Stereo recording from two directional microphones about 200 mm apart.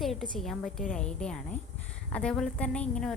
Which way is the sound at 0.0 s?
Centre (ahead or behind).